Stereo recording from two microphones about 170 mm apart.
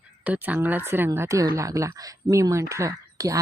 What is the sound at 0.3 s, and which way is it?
Speech, 10° right (ahead or behind).